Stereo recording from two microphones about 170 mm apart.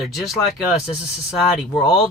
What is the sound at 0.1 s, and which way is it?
Speech, centre (ahead or behind).